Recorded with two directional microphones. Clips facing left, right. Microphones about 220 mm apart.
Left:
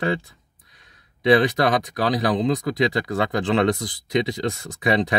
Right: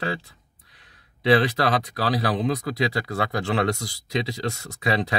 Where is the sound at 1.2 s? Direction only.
15° left (ahead or behind).